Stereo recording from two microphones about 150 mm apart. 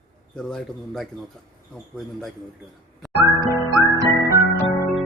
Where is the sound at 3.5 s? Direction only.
25° left (ahead or behind).